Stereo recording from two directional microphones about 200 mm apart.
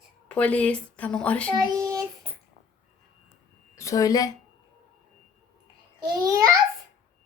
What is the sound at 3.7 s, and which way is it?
Speech, 15° left (ahead or behind).